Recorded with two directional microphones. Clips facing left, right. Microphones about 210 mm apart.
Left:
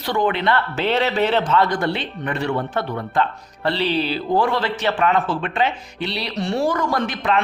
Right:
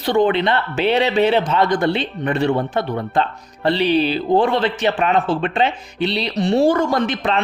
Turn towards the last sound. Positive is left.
turn(degrees=-25)  # may be behind; listen again after turning